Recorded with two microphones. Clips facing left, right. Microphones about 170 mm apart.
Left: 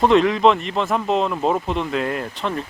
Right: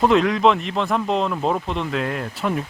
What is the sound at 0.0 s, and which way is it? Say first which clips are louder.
A man's voice: left 1 dB; centre (ahead or behind).